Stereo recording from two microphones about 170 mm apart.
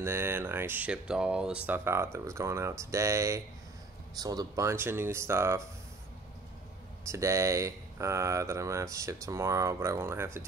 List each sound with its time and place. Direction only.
0.0 s speech: 15° right (ahead or behind)
7.1 s speech: 15° right (ahead or behind)